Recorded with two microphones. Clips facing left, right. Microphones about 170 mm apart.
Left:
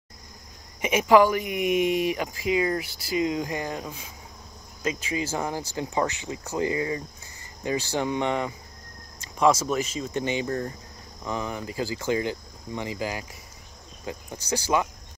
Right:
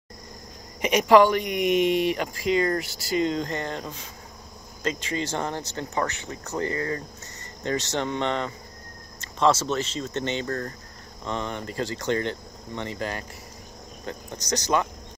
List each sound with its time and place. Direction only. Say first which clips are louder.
0.7 s speech: right 1 dB; centre (ahead or behind)